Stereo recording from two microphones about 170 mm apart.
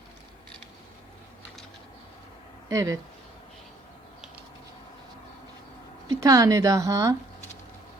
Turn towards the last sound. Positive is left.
turn(degrees=-20)  # may be behind; listen again after turning